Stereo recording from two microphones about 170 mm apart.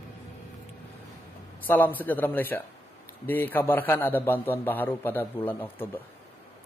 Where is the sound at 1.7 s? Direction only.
10° left (ahead or behind).